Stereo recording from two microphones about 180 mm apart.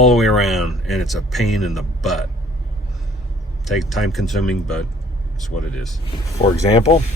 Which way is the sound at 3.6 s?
Centre (ahead or behind).